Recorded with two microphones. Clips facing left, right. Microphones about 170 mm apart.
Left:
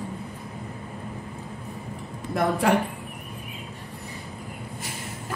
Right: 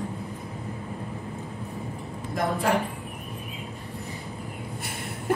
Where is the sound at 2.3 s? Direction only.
70° left (ahead or behind).